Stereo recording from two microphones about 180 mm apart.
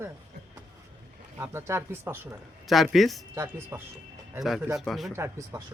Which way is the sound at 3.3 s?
15° right (ahead or behind).